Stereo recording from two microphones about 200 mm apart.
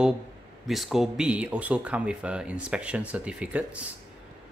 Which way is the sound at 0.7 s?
Centre (ahead or behind).